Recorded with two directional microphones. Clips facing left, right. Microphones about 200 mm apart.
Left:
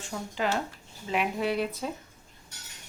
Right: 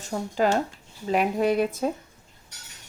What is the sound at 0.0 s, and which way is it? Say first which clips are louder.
Speech: right 7 dB; 40° right (ahead or behind).